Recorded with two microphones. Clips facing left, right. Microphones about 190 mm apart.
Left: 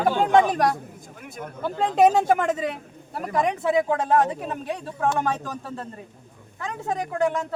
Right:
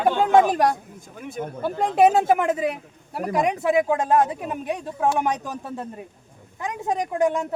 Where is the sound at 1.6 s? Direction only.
10° right (ahead or behind).